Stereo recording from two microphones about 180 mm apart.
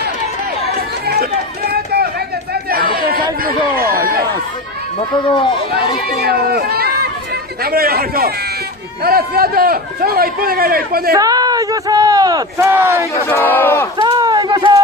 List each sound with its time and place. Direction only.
0.7 s chatter: 60° right (ahead or behind)
2.7 s chatter: 55° right (ahead or behind)
3.4 s a sound: 55° right (ahead or behind)
6.0 s a man's voice: 60° right (ahead or behind)
11.1 s speech: 20° right (ahead or behind)
13.1 s crowd: 10° left (ahead or behind)
14.0 s run: 25° right (ahead or behind)